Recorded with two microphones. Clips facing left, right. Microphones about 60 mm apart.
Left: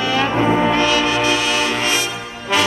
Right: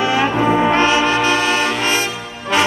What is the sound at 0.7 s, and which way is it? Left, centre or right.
Brass instrument, right.